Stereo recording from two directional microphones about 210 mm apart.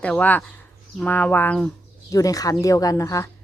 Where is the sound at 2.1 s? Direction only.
15° left (ahead or behind).